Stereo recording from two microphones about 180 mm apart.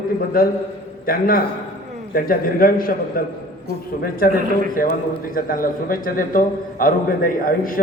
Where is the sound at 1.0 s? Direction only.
55° left (ahead or behind).